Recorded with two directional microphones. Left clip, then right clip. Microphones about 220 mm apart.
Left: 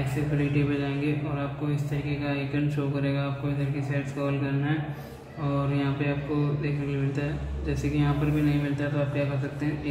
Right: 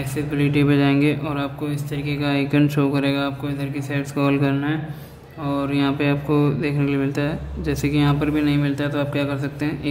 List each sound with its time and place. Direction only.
0.4 s speech: 50° right (ahead or behind)